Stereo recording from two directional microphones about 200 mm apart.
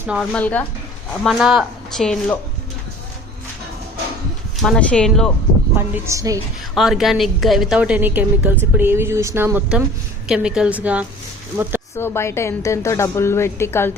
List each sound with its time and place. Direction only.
0.0 s speech: 5° right (ahead or behind)
0.3 s a woman's voice: 5° left (ahead or behind)
4.6 s speech: 5° left (ahead or behind)
5.7 s speech: 15° right (ahead or behind)
6.7 s speech: centre (ahead or behind)
11.9 s a woman's voice: 10° left (ahead or behind)